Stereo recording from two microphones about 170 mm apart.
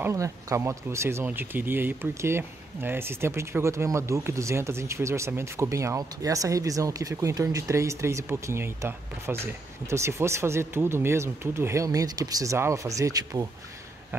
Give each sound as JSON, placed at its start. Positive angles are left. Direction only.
{"t": 0.0, "sound": "speech", "side_deg": -20}